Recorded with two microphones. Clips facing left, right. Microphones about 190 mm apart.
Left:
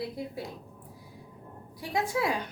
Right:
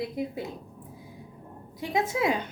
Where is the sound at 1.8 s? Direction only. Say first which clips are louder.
Right 3 dB; 20° right (ahead or behind).